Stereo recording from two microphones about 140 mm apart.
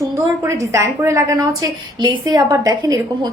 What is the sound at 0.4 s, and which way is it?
A woman's voice, 20° right (ahead or behind).